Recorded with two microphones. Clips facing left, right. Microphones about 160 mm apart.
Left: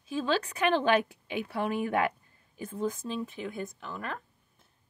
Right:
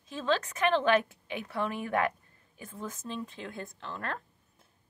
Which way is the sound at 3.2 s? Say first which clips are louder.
Left 4 dB; 15° left (ahead or behind).